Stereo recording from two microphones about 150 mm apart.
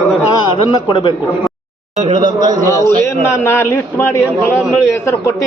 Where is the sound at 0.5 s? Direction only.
30° left (ahead or behind).